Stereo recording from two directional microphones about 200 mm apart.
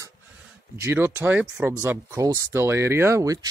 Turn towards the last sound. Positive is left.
turn(degrees=-15)  # may be behind; listen again after turning